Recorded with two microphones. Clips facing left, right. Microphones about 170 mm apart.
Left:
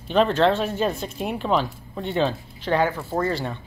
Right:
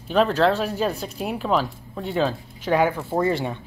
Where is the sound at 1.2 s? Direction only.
Centre (ahead or behind).